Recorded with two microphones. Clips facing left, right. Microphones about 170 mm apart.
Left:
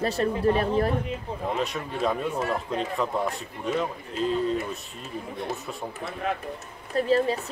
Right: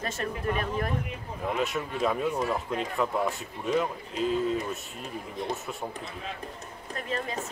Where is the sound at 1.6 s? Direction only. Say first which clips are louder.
Right 2 dB; centre (ahead or behind).